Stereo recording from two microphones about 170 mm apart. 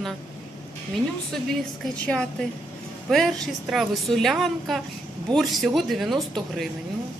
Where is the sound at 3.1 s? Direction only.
Centre (ahead or behind).